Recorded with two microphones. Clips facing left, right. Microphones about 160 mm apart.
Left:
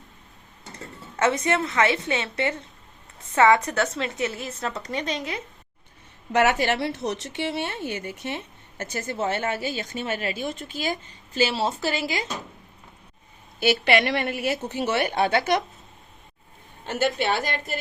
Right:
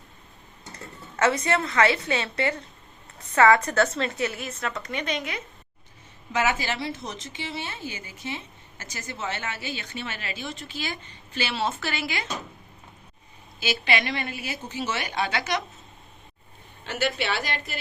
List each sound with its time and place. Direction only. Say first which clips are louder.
1.2 s a woman's voice: left 1 dB; 20° left (ahead or behind)
6.3 s a woman's voice: left 5 dB; 65° left (ahead or behind); by 10.9 s 50° left (ahead or behind)
11.3 s speech: left 4 dB; 40° left (ahead or behind)
13.6 s a woman's voice: left 6 dB; 60° left (ahead or behind)
16.8 s a woman's voice: left 4 dB; 45° left (ahead or behind)